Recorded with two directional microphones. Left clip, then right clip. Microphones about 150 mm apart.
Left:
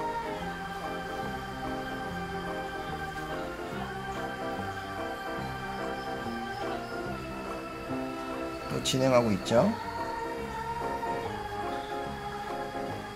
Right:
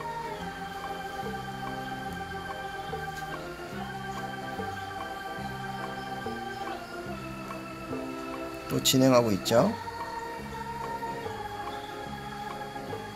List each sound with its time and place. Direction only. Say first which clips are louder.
8.8 s speech: right 2 dB; 25° right (ahead or behind)